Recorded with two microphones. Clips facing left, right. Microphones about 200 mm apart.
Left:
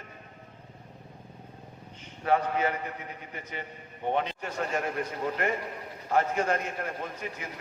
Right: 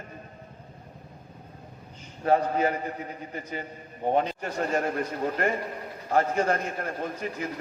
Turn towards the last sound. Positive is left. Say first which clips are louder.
# right 5 dB
turn(degrees=-35)  # may be behind; listen again after turning